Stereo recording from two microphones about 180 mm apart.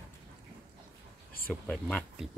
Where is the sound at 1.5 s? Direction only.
5° left (ahead or behind).